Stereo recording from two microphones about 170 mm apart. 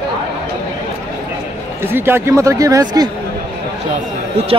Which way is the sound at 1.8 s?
15° right (ahead or behind).